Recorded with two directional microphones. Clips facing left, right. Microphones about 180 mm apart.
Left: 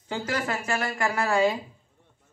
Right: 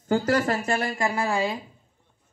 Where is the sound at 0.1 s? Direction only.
45° right (ahead or behind); by 1.4 s 15° right (ahead or behind).